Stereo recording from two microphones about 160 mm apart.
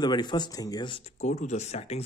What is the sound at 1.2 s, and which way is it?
Speech, 45° left (ahead or behind).